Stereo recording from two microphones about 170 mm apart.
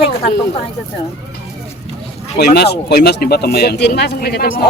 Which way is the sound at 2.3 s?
70° left (ahead or behind).